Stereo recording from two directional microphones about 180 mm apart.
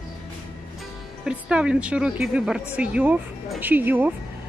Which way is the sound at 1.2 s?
5° right (ahead or behind).